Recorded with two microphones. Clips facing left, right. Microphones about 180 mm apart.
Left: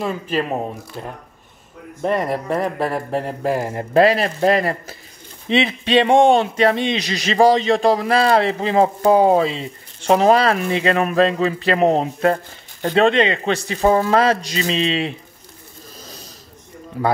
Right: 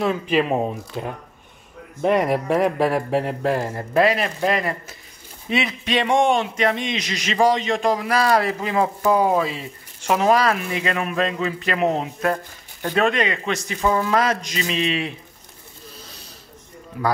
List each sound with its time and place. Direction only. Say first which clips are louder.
0.1 s speech: right 2 dB; 5° right (ahead or behind)
3.9 s a man's voice: left 4 dB; 30° left (ahead or behind)
16.0 s snoring: left 4 dB; 40° left (ahead or behind)
17.0 s a man's voice: left 3 dB; 35° left (ahead or behind)